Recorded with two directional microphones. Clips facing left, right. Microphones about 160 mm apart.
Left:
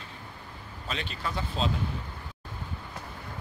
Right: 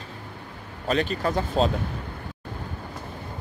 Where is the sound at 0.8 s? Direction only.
50° right (ahead or behind).